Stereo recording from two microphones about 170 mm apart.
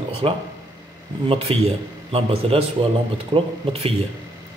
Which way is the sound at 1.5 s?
35° right (ahead or behind).